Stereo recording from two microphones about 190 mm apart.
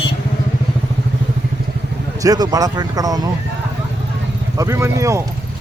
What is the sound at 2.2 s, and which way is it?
A man's voice, 20° right (ahead or behind).